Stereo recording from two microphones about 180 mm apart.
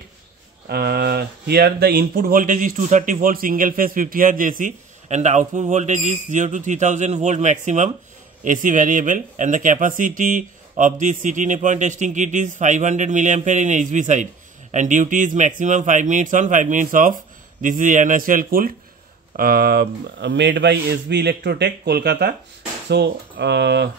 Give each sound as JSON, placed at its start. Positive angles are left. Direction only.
{"t": 0.7, "sound": "speech", "side_deg": -60}